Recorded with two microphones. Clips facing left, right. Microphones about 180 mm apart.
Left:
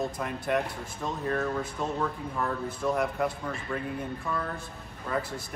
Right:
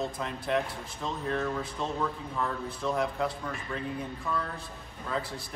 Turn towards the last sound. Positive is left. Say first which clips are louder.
# left 2 dB
turn(degrees=0)  # may be behind; listen again after turning